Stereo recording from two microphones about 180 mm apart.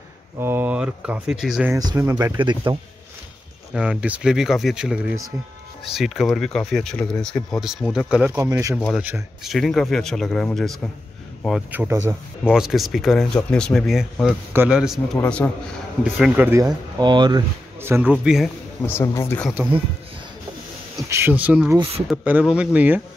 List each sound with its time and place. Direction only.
0.4 s speech: 10° right (ahead or behind)
1.7 s speech: 20° right (ahead or behind)
3.7 s speech: 5° right (ahead or behind)
8.7 s speech: centre (ahead or behind)
11.7 s speech: 10° right (ahead or behind)
15.1 s speech: 10° left (ahead or behind)
16.0 s speech: 5° right (ahead or behind)
17.0 s speech: 25° right (ahead or behind)
17.7 s speech: 15° right (ahead or behind)
18.9 s speech: 15° left (ahead or behind)
21.1 s speech: 10° right (ahead or behind)
21.7 s speech: 30° right (ahead or behind)
22.1 s speech: 5° right (ahead or behind)